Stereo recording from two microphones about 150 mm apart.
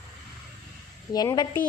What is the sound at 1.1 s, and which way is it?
Speech, 25° left (ahead or behind).